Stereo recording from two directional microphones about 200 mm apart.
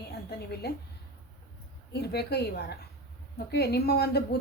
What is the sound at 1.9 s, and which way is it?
A woman's voice, 55° left (ahead or behind).